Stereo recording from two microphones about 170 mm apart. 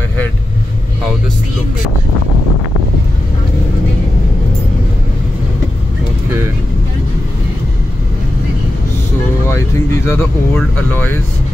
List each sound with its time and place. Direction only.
10.0 s speech: 10° left (ahead or behind)